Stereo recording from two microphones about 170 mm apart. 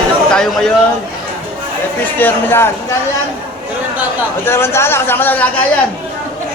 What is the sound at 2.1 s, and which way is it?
Speech, 10° left (ahead or behind).